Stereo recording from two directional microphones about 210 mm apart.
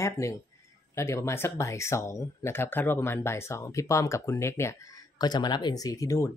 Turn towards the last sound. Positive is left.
turn(degrees=15)  # may be behind; listen again after turning